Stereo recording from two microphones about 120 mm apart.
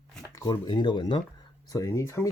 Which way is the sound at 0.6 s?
40° left (ahead or behind).